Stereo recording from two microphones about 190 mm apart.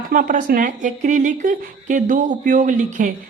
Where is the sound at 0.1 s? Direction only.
45° right (ahead or behind).